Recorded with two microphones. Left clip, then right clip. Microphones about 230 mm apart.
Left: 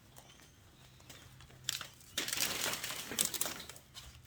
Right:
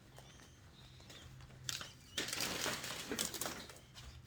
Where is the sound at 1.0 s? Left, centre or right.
Left.